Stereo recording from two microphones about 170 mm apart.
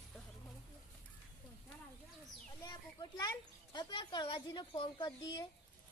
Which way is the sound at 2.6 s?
25° left (ahead or behind).